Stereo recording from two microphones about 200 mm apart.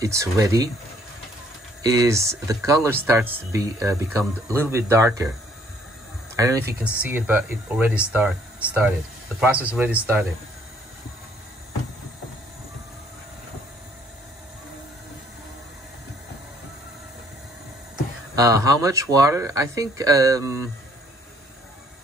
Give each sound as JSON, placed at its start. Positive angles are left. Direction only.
{"t": 0.0, "sound": "speech", "side_deg": -15}
{"t": 1.8, "sound": "speech", "side_deg": -20}
{"t": 6.3, "sound": "speech", "side_deg": -15}
{"t": 18.3, "sound": "speech", "side_deg": -15}